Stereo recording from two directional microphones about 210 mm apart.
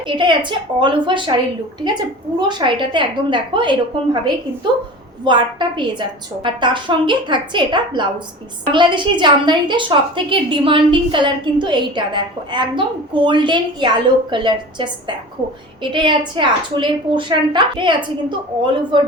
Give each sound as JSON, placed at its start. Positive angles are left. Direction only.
{"t": 0.1, "sound": "a woman's voice", "side_deg": -20}
{"t": 5.2, "sound": "a woman's voice", "side_deg": -20}